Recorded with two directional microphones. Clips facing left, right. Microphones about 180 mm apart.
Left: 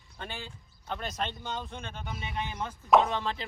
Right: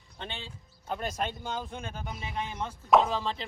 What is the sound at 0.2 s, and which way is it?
Speech, 25° right (ahead or behind).